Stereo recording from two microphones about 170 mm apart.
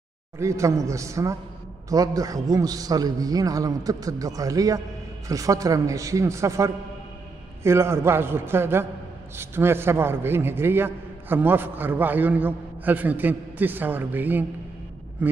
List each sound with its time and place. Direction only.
0.4 s a man's voice: 15° right (ahead or behind)